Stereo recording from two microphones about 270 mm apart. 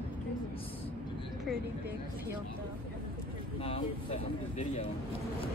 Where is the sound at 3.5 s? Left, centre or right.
Left.